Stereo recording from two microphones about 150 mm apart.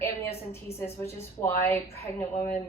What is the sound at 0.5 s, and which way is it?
Speech, 15° left (ahead or behind).